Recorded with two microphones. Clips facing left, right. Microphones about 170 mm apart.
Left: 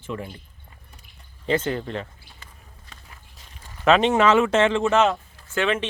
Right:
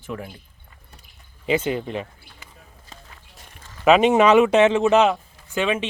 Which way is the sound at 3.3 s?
60° right (ahead or behind).